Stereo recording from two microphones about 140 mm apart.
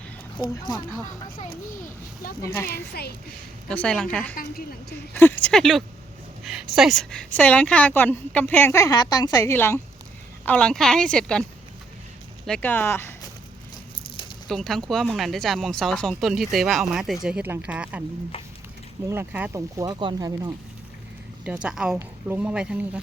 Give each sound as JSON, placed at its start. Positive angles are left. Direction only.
{"t": 0.3, "sound": "speech", "side_deg": 30}
{"t": 2.4, "sound": "speech", "side_deg": 20}
{"t": 3.7, "sound": "a woman's voice", "side_deg": 5}
{"t": 12.5, "sound": "a woman's voice", "side_deg": 10}
{"t": 14.4, "sound": "speech", "side_deg": 5}
{"t": 19.0, "sound": "speech", "side_deg": -15}
{"t": 19.7, "sound": "speech", "side_deg": -25}
{"t": 21.4, "sound": "speech", "side_deg": -10}